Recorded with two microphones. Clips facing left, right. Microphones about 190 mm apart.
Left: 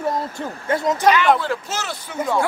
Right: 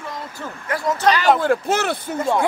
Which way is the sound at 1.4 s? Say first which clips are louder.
Right 7 dB; 55° right (ahead or behind).